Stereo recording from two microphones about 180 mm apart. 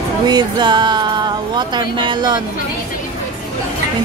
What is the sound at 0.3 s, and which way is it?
Music, 25° right (ahead or behind).